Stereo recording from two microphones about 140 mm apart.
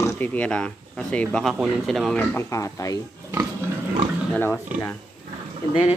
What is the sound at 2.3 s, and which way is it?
Speech, 20° left (ahead or behind).